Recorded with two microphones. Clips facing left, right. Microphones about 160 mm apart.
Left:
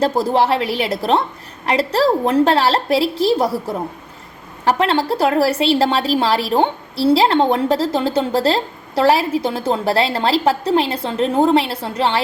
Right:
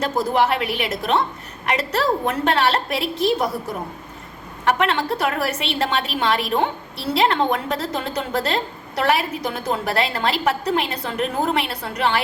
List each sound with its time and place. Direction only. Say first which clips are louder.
0.0 s a woman's voice: left 4 dB; 30° left (ahead or behind)